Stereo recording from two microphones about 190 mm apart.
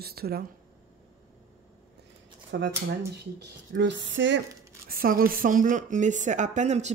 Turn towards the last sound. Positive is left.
turn(degrees=-35)  # may be behind; listen again after turning